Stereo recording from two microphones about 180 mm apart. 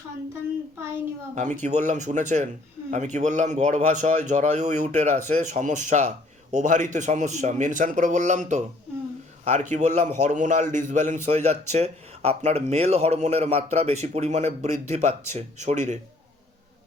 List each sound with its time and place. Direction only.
1.4 s a man's voice: 40° right (ahead or behind)